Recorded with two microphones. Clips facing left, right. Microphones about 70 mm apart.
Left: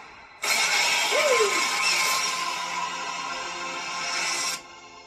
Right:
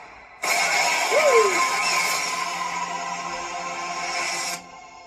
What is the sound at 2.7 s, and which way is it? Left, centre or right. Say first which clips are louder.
Music: right 2 dB; right.